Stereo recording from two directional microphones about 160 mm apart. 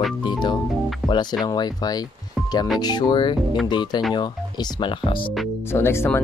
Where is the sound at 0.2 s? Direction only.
30° left (ahead or behind).